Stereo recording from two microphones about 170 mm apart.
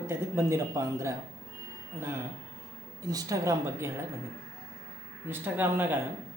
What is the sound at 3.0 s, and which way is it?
Speech, 20° right (ahead or behind).